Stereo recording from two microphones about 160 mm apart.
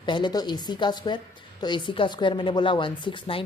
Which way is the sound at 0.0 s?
30° left (ahead or behind).